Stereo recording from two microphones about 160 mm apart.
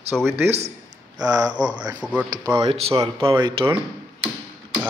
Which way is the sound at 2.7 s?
40° right (ahead or behind).